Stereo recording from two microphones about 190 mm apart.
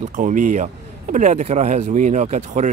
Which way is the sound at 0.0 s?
40° right (ahead or behind).